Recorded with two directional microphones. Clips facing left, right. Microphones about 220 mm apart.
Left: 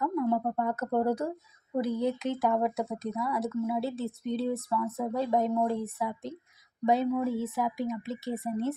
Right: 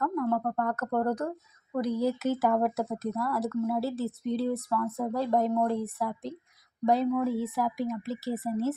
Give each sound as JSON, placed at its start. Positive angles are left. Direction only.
{"t": 0.3, "sound": "speech", "side_deg": 15}